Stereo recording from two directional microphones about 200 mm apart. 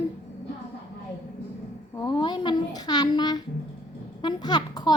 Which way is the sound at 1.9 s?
20° left (ahead or behind).